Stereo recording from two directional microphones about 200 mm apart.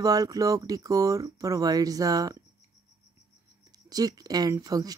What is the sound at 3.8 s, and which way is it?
Speech, 20° right (ahead or behind).